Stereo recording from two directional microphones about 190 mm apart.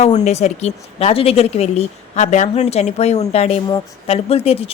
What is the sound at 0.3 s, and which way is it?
A woman's voice, 35° left (ahead or behind).